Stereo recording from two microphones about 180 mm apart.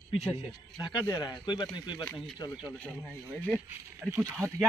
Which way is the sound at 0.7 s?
25° left (ahead or behind).